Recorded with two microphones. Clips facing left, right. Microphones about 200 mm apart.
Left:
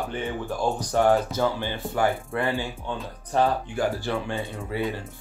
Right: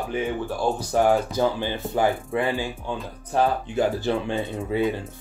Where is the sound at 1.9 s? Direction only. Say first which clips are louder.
Right 2 dB; 15° right (ahead or behind).